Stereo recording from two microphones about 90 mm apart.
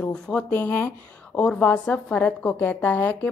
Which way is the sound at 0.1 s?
10° left (ahead or behind).